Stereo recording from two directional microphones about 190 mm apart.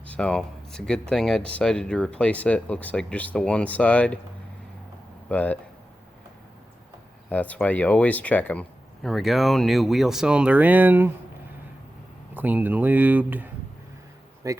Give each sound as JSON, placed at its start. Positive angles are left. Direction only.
{"t": 0.0, "sound": "speech", "side_deg": 5}
{"t": 5.3, "sound": "speech", "side_deg": 10}
{"t": 7.3, "sound": "speech", "side_deg": 10}
{"t": 12.3, "sound": "speech", "side_deg": -10}